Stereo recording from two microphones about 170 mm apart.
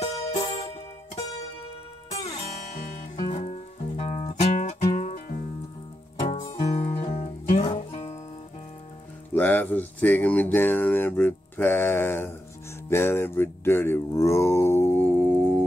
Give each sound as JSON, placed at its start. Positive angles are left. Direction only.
{"t": 0.0, "sound": "music", "side_deg": 40}
{"t": 0.4, "sound": "music", "side_deg": 25}
{"t": 2.0, "sound": "music", "side_deg": 40}
{"t": 2.8, "sound": "music", "side_deg": 60}
{"t": 3.3, "sound": "music", "side_deg": 45}
{"t": 6.5, "sound": "music", "side_deg": 40}
{"t": 9.3, "sound": "speech", "side_deg": 10}